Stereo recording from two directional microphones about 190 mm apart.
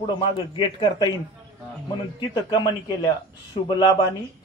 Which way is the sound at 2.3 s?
20° left (ahead or behind).